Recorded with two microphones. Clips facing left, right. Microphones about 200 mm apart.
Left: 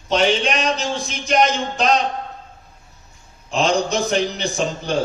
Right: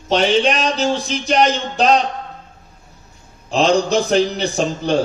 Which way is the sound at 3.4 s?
35° right (ahead or behind).